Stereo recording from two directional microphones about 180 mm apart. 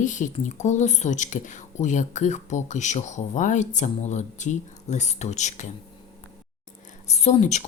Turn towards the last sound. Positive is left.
turn(degrees=40)  # may be behind; listen again after turning